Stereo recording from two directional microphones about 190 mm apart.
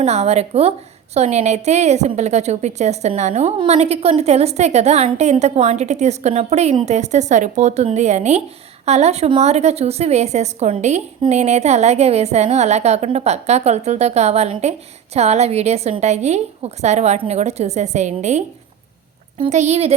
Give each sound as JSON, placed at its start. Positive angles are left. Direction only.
{"t": 0.0, "sound": "a woman's voice", "side_deg": -35}